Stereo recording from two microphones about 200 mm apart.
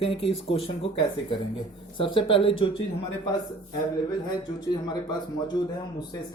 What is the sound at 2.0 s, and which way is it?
Speech, 25° left (ahead or behind).